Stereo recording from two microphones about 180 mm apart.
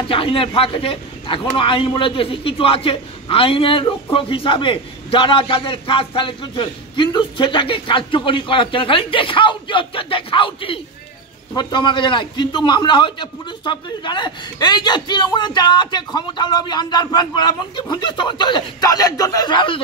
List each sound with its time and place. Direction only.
0.0 s speech: 30° left (ahead or behind)